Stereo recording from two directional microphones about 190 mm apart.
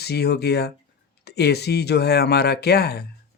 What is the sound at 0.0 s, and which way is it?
Speech, 60° left (ahead or behind).